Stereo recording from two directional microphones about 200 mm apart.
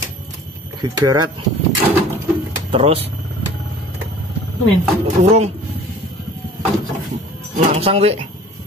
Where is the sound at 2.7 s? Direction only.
30° right (ahead or behind).